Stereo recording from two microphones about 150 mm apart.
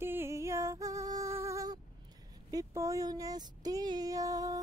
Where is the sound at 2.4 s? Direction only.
25° right (ahead or behind).